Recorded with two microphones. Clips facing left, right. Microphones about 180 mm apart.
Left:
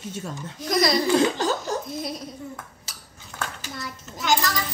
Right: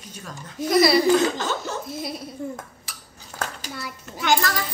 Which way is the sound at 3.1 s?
40° right (ahead or behind).